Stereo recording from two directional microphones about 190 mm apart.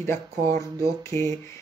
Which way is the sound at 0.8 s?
15° left (ahead or behind).